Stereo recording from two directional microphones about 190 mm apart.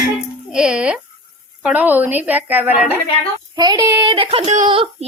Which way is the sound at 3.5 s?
20° right (ahead or behind).